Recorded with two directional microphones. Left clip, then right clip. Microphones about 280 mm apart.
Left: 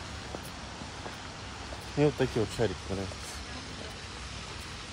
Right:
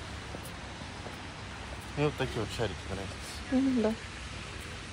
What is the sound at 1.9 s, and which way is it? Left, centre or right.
Speech, left.